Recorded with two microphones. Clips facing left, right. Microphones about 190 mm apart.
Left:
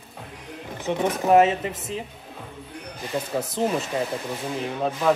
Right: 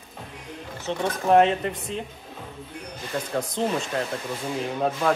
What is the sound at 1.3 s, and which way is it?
Speech, 5° left (ahead or behind).